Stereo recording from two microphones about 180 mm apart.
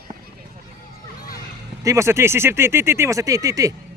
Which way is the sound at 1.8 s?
15° right (ahead or behind).